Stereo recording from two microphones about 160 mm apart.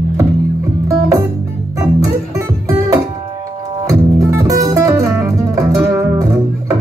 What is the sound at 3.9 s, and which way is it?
Music, 20° right (ahead or behind).